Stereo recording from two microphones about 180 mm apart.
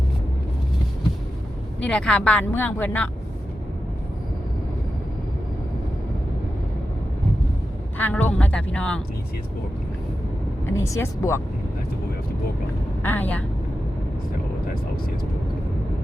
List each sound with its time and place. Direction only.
1.9 s speech: 5° left (ahead or behind)
7.9 s speech: 10° left (ahead or behind)
10.7 s speech: 15° left (ahead or behind)
13.0 s speech: 10° left (ahead or behind)